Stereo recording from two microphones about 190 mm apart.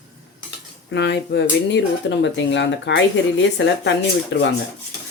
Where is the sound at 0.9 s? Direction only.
65° left (ahead or behind).